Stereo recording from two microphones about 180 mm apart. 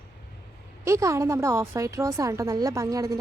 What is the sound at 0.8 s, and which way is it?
A woman's voice, 15° right (ahead or behind).